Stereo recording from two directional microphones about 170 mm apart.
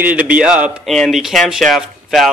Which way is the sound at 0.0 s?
10° right (ahead or behind).